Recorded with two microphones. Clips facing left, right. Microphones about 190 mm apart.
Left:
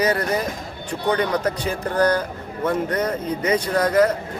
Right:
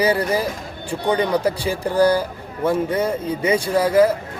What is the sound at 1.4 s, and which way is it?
Speech, 30° right (ahead or behind).